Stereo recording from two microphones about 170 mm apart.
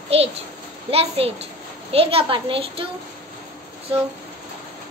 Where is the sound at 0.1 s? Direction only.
35° right (ahead or behind).